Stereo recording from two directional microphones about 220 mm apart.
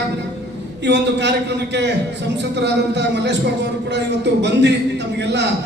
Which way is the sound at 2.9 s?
50° right (ahead or behind).